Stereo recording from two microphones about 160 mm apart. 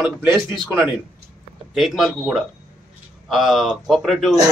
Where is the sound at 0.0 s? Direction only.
5° right (ahead or behind).